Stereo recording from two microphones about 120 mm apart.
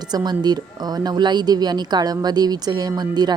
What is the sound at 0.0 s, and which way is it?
A woman's voice, 35° right (ahead or behind).